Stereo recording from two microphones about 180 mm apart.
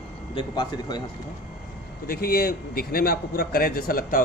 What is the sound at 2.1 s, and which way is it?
A man's voice, 55° left (ahead or behind).